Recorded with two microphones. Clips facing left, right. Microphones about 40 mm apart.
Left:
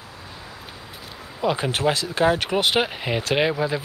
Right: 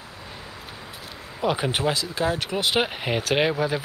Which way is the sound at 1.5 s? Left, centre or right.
Centre.